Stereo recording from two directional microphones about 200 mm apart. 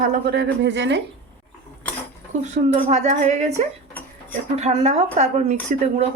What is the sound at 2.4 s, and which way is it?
A woman's voice, 35° right (ahead or behind).